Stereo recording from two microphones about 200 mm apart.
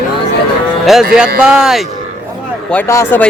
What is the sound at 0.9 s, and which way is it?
Speech, centre (ahead or behind).